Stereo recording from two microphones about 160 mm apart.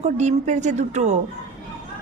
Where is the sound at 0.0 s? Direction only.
45° right (ahead or behind).